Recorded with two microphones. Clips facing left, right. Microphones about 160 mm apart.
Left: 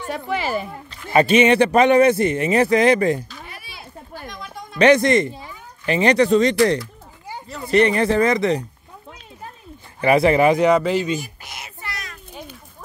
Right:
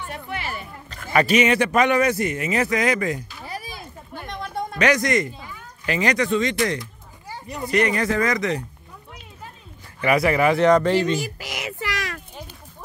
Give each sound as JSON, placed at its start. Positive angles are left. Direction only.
{"t": 0.0, "sound": "speech", "side_deg": 90}
{"t": 1.1, "sound": "speech", "side_deg": 25}
{"t": 3.4, "sound": "a sound", "side_deg": -40}
{"t": 4.1, "sound": "a sound", "side_deg": -60}
{"t": 4.7, "sound": "speech", "side_deg": 30}
{"t": 7.7, "sound": "speech", "side_deg": 30}
{"t": 9.9, "sound": "speech", "side_deg": 30}
{"t": 10.6, "sound": "speech", "side_deg": 5}
{"t": 11.1, "sound": "a sound", "side_deg": -90}